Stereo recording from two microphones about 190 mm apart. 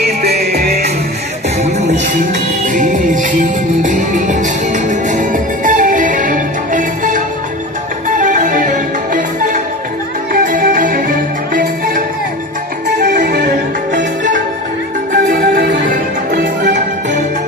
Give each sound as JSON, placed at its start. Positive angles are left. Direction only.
{"t": 0.2, "sound": "music", "side_deg": -55}
{"t": 2.6, "sound": "music", "side_deg": -45}
{"t": 12.8, "sound": "music", "side_deg": -65}
{"t": 13.4, "sound": "music", "side_deg": -40}